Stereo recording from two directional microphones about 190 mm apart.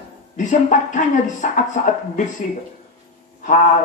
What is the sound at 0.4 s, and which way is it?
Speech, 40° left (ahead or behind).